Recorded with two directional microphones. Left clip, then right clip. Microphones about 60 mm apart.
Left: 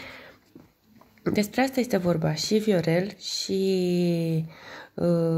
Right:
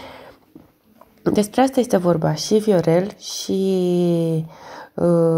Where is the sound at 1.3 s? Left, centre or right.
Right.